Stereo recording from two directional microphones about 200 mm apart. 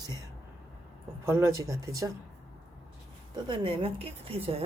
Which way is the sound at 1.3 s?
15° right (ahead or behind).